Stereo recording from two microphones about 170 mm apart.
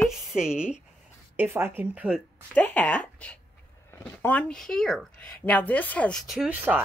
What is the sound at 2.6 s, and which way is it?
Speech, 10° left (ahead or behind).